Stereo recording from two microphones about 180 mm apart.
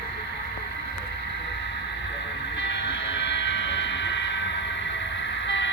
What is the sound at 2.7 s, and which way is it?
Vehicle, 75° left (ahead or behind).